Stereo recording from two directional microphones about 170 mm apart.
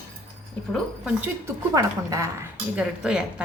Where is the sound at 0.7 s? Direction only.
10° right (ahead or behind).